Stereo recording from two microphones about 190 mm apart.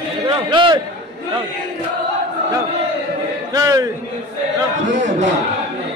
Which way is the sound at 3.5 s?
15° right (ahead or behind).